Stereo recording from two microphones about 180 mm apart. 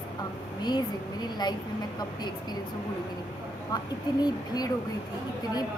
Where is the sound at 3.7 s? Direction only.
20° left (ahead or behind).